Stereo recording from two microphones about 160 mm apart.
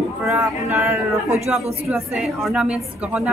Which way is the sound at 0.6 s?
15° right (ahead or behind).